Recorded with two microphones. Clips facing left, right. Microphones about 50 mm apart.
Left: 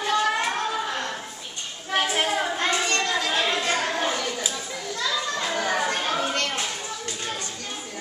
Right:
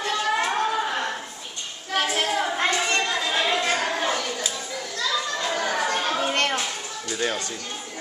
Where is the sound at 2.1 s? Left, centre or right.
Centre.